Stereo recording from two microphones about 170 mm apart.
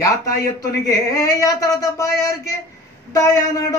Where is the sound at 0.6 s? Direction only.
20° left (ahead or behind).